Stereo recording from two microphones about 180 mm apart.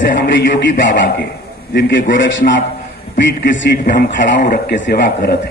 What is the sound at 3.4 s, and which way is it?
A man's voice, 70° left (ahead or behind).